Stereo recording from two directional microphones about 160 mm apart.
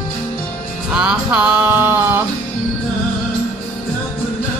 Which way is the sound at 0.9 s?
5° right (ahead or behind).